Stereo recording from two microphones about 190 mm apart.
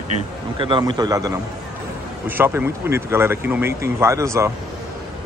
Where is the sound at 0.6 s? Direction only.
25° right (ahead or behind).